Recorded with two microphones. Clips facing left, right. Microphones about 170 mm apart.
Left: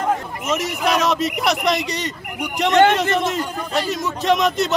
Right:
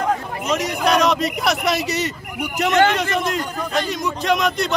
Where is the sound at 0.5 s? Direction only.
5° left (ahead or behind).